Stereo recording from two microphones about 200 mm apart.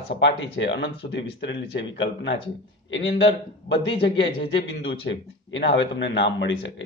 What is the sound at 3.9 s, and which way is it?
A man's voice, 60° left (ahead or behind).